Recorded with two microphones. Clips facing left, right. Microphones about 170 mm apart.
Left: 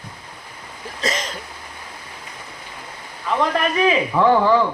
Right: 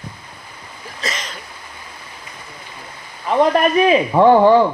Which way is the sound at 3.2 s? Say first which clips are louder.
Right 6 dB; 35° right (ahead or behind).